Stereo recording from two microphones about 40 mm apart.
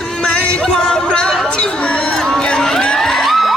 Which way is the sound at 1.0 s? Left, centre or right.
Left.